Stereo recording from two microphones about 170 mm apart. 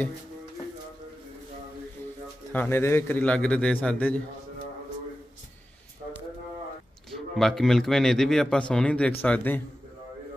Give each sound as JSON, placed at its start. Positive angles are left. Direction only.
{"t": 2.5, "sound": "a man's voice", "side_deg": 10}
{"t": 7.1, "sound": "a man's voice", "side_deg": 0}